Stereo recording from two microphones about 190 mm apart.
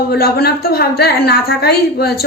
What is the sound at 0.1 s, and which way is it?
A woman's voice, 55° left (ahead or behind).